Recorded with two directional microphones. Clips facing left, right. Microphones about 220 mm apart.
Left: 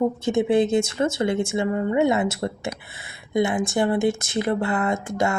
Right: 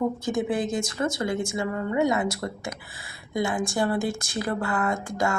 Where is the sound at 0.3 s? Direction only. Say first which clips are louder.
Left 6 dB; 25° left (ahead or behind).